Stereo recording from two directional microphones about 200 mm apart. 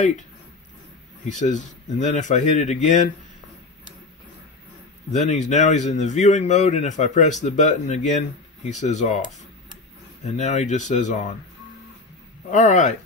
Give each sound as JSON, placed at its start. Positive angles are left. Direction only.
{"t": 1.3, "sound": "speech", "side_deg": 35}
{"t": 5.3, "sound": "speech", "side_deg": 35}
{"t": 10.2, "sound": "speech", "side_deg": 35}
{"t": 12.4, "sound": "speech", "side_deg": 35}